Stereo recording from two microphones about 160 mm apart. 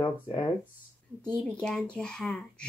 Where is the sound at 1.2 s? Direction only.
5° left (ahead or behind).